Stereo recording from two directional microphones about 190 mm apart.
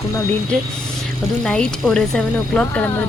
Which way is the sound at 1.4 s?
5° left (ahead or behind).